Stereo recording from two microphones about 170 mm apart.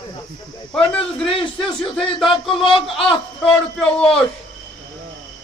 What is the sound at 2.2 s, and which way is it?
Speech, centre (ahead or behind).